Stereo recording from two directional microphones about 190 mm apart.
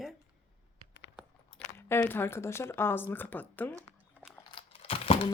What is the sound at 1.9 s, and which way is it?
Speech, 10° left (ahead or behind).